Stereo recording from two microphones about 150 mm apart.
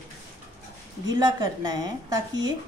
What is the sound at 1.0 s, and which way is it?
Speech, 25° right (ahead or behind).